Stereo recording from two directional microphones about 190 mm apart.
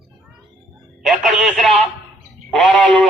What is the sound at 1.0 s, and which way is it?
Music, centre (ahead or behind).